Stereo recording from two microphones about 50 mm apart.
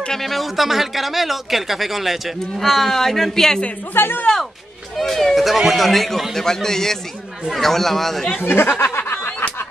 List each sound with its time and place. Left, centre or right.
0.1 s speech: centre
3.9 s speech: left
4.9 s a man's voice: centre
8.4 s speech: left
8.8 s snicker: left